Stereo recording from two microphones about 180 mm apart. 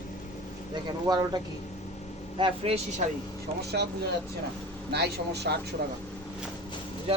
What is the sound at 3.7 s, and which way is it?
Speech, 70° right (ahead or behind).